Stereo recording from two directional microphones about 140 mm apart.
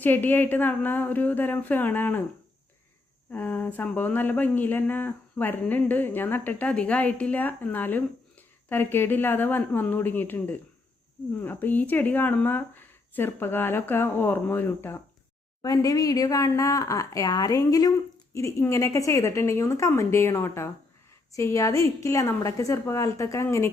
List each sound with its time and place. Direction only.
0.0 s speech: 15° left (ahead or behind)
3.3 s speech: 10° left (ahead or behind)
15.6 s speech: 25° left (ahead or behind)